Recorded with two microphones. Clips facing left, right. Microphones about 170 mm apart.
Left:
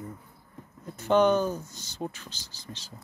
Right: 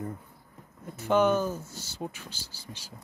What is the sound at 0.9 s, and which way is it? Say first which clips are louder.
Speech: left 2 dB; 5° right (ahead or behind).